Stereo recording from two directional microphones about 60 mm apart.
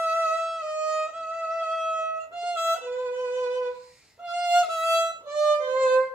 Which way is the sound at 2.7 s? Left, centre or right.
Right.